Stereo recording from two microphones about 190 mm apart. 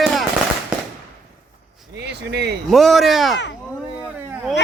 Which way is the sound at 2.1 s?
60° right (ahead or behind).